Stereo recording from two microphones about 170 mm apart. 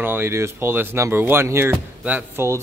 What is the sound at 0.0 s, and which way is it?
Speech, 15° right (ahead or behind).